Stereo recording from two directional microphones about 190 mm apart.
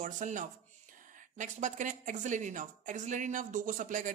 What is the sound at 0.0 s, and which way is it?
Speech, 40° right (ahead or behind).